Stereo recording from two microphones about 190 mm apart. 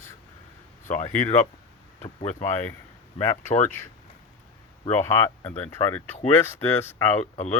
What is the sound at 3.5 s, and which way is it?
Speech, 40° left (ahead or behind).